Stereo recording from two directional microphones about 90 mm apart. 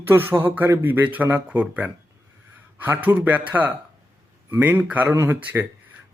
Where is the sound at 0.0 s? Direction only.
25° right (ahead or behind).